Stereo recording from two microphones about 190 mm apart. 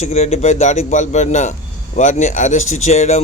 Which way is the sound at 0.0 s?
35° left (ahead or behind).